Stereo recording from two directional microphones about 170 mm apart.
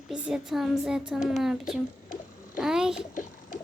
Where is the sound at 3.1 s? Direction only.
50° left (ahead or behind).